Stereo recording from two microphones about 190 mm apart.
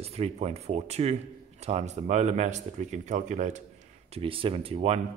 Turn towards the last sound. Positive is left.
turn(degrees=-30)  # may be behind; listen again after turning